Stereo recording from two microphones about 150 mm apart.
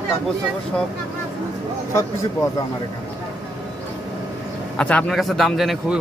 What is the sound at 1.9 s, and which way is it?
Speech, 20° left (ahead or behind).